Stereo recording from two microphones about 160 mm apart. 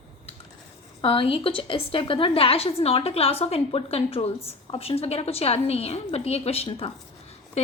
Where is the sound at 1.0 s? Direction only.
35° left (ahead or behind).